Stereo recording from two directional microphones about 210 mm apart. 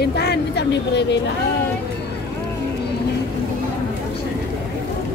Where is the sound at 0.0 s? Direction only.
50° left (ahead or behind).